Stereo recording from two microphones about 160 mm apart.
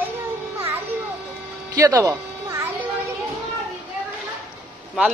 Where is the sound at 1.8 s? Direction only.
20° right (ahead or behind).